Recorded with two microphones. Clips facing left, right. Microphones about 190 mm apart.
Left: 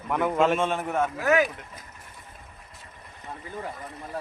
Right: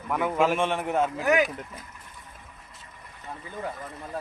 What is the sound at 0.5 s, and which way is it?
Speech, 15° right (ahead or behind).